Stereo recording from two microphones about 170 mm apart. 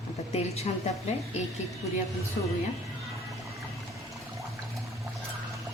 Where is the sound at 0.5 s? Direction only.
40° left (ahead or behind).